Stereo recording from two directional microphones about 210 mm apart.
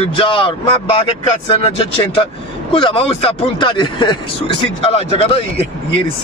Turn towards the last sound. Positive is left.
turn(degrees=25)  # may be behind; listen again after turning